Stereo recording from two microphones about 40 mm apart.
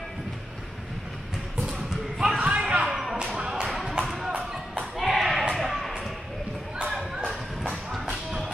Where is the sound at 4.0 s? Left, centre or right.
Centre.